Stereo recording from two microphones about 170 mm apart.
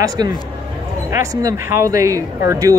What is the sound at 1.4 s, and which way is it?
Speech, 20° right (ahead or behind).